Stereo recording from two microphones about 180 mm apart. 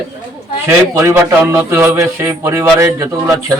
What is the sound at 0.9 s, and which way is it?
Speech, 15° right (ahead or behind).